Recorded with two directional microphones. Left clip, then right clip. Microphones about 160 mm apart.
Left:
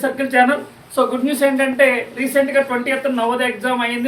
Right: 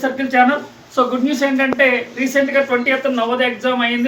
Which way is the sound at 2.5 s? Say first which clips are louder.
Right 2 dB; 10° right (ahead or behind).